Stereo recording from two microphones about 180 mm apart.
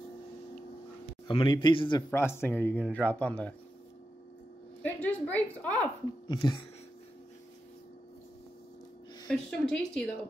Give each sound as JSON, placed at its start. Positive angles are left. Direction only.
{"t": 1.2, "sound": "a man's voice", "side_deg": 25}
{"t": 2.0, "sound": "speech", "side_deg": 15}
{"t": 4.8, "sound": "a sound", "side_deg": 10}
{"t": 6.2, "sound": "speech", "side_deg": 25}
{"t": 9.3, "sound": "a woman's voice", "side_deg": 5}